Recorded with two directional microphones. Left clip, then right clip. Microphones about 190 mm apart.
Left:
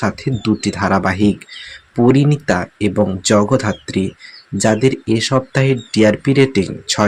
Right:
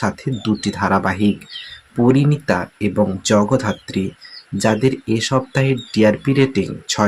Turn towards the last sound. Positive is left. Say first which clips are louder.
# left 3 dB
turn(degrees=15)  # may be behind; listen again after turning